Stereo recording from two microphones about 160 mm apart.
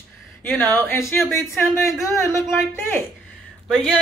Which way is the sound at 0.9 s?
20° left (ahead or behind).